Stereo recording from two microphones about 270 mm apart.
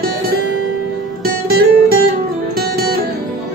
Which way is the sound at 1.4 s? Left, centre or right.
Right.